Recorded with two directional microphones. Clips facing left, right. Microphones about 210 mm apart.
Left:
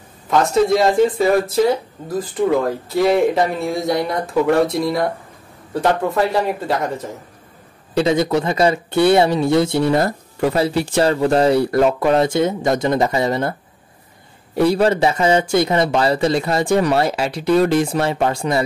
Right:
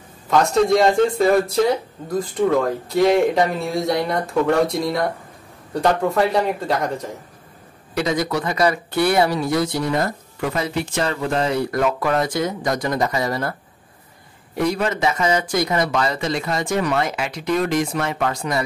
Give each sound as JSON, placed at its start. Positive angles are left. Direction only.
{"t": 0.3, "sound": "speech", "side_deg": 0}
{"t": 7.9, "sound": "speech", "side_deg": 25}